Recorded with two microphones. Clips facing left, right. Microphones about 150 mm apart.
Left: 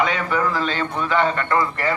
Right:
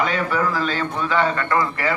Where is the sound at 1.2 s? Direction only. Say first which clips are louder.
Even; 25° left (ahead or behind).